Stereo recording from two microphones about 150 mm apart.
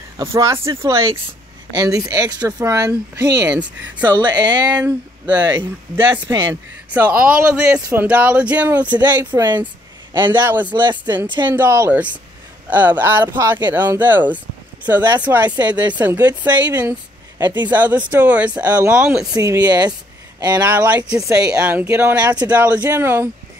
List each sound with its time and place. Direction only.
0.3 s speech: 20° right (ahead or behind)
2.9 s speech: 10° right (ahead or behind)
4.0 s speech: 25° right (ahead or behind)
4.7 s speech: 10° right (ahead or behind)
10.7 s speech: 30° right (ahead or behind)
11.5 s speech: 15° right (ahead or behind)
16.7 s a sound: 10° right (ahead or behind)
17.6 s speech: 10° right (ahead or behind)
19.3 s speech: 25° right (ahead or behind)
20.6 s speech: 10° right (ahead or behind)
21.3 s speech: 25° right (ahead or behind)
21.5 s speech: 10° right (ahead or behind)